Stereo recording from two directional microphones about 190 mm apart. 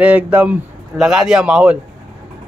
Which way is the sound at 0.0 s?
5° right (ahead or behind).